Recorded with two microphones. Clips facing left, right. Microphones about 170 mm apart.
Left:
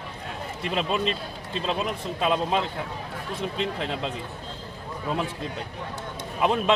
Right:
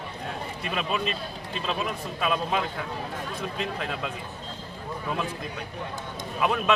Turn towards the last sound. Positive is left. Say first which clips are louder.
# left 2 dB
turn(degrees=25)  # may be behind; listen again after turning